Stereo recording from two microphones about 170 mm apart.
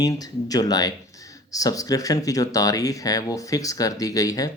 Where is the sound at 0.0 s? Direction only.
20° left (ahead or behind).